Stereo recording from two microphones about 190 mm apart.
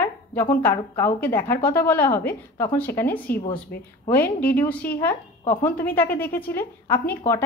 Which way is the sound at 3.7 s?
55° left (ahead or behind).